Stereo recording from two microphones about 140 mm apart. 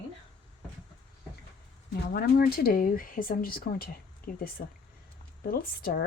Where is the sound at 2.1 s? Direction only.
90° left.